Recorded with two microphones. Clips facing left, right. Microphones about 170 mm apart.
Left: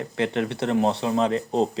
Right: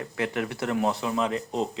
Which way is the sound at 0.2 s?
25° left (ahead or behind).